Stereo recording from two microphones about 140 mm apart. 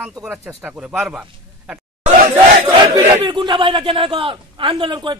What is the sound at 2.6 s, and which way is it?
A man's voice, 25° right (ahead or behind).